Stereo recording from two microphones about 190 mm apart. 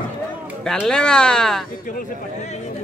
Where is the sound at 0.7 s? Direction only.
5° left (ahead or behind).